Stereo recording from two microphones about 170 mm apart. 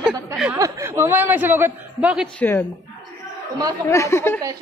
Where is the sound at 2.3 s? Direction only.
10° left (ahead or behind).